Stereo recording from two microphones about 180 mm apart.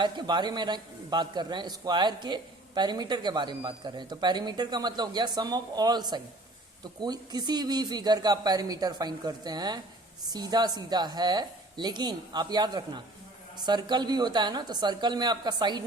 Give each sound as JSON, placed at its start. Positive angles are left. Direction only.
{"t": 0.0, "sound": "a man's voice", "side_deg": -25}